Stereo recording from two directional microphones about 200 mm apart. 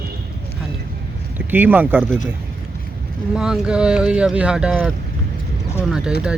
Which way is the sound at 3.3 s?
5° right (ahead or behind).